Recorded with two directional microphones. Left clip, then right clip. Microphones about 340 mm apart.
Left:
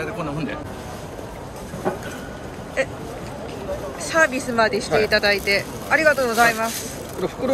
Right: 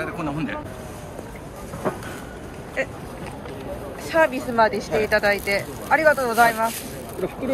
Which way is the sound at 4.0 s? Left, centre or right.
Centre.